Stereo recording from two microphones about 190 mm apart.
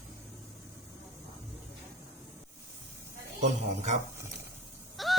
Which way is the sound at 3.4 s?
40° right (ahead or behind).